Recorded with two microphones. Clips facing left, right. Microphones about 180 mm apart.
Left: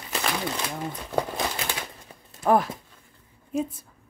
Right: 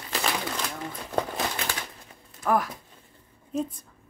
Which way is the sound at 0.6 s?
15° left (ahead or behind).